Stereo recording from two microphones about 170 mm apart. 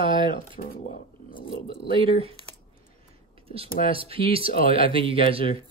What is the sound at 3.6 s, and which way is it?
Speech, 55° left (ahead or behind).